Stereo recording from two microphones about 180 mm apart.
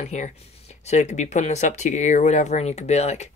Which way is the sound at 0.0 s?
40° left (ahead or behind).